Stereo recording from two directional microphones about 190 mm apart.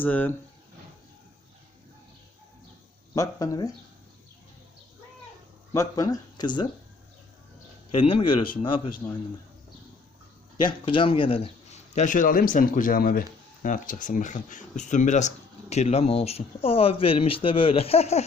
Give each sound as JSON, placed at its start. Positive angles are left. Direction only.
{"t": 0.0, "sound": "speech", "side_deg": 10}
{"t": 3.2, "sound": "a man's voice", "side_deg": 20}
{"t": 5.7, "sound": "a man's voice", "side_deg": 15}
{"t": 7.9, "sound": "a man's voice", "side_deg": 30}
{"t": 10.6, "sound": "a man's voice", "side_deg": 25}